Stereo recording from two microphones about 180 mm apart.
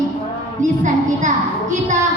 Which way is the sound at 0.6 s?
45° right (ahead or behind).